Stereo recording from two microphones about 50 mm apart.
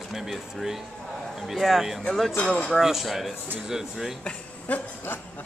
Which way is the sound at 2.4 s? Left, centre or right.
Centre.